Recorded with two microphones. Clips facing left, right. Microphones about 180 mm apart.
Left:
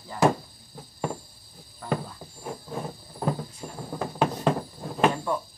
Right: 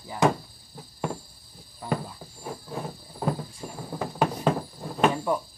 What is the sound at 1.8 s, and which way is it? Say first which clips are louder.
Speech: even; 15° right (ahead or behind).